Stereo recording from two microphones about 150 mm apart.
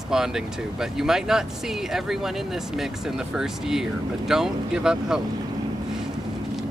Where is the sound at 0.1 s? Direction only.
5° right (ahead or behind).